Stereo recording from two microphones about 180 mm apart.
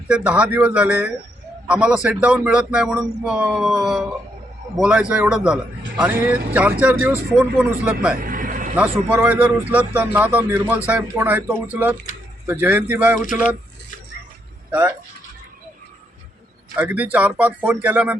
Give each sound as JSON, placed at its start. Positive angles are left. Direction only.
{"t": 0.1, "sound": "a man's voice", "side_deg": -5}
{"t": 8.2, "sound": "vehicle", "side_deg": -50}
{"t": 8.7, "sound": "a man's voice", "side_deg": -10}
{"t": 14.7, "sound": "speech", "side_deg": -10}
{"t": 16.7, "sound": "a man's voice", "side_deg": -10}